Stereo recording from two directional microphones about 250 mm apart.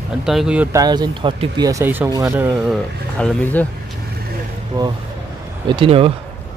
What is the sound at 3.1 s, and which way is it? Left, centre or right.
Speech, centre.